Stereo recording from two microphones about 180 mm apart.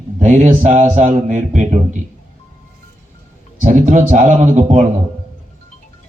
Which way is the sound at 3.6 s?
45° right (ahead or behind).